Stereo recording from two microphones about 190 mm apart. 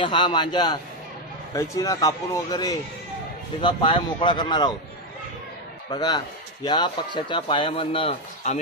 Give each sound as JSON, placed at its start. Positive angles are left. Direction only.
{"t": 0.0, "sound": "speech", "side_deg": 25}
{"t": 5.9, "sound": "speech", "side_deg": 20}